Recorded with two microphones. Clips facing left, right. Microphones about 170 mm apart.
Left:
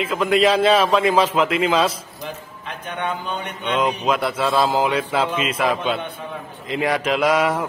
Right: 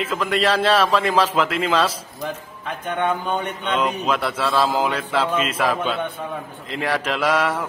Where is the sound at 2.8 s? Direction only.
50° right (ahead or behind).